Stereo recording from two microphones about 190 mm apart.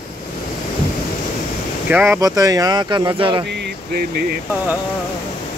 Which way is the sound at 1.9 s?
10° right (ahead or behind).